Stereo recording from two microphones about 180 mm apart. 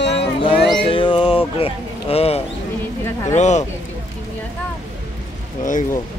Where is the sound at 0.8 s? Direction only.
30° left (ahead or behind).